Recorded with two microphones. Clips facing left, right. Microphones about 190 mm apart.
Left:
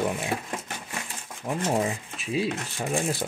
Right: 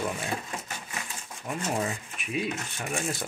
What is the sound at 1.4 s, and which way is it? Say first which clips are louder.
Speech: left 4 dB; 25° left (ahead or behind).